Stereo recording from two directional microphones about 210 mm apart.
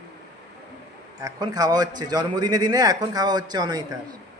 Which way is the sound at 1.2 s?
15° right (ahead or behind).